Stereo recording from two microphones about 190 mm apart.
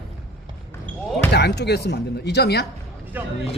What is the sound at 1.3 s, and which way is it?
Speech, 60° left (ahead or behind).